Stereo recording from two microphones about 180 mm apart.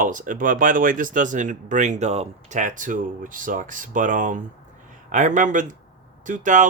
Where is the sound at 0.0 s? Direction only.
45° right (ahead or behind).